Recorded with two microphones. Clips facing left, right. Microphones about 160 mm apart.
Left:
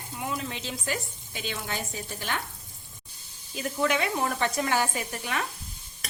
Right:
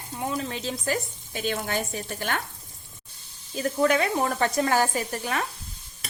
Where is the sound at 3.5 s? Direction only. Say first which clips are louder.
Right 4 dB; 40° right (ahead or behind).